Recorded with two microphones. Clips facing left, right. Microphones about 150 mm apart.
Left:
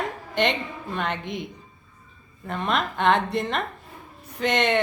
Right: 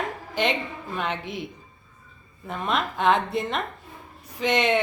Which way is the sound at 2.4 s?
Centre (ahead or behind).